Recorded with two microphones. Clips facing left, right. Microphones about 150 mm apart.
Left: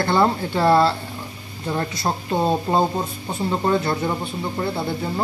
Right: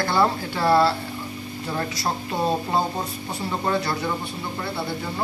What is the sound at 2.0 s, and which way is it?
Speech, 25° left (ahead or behind).